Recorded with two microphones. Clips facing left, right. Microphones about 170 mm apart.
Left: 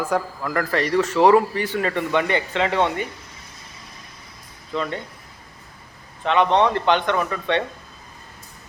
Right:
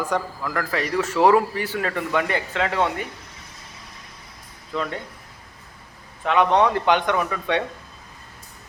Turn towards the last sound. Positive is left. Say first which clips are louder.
# left 1 dB
turn(degrees=-5)  # may be behind; listen again after turning